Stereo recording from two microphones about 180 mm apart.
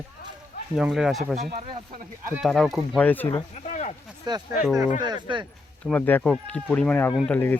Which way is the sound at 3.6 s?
45° left (ahead or behind).